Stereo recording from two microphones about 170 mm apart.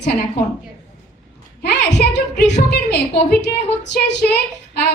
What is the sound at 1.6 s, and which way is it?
A woman's voice, 80° left.